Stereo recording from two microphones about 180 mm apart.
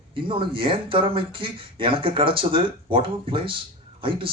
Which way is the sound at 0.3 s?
30° right (ahead or behind).